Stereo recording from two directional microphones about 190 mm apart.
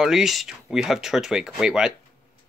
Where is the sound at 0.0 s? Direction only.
Centre (ahead or behind).